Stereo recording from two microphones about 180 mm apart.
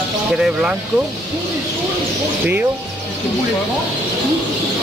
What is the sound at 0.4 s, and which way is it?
Speech, 5° right (ahead or behind).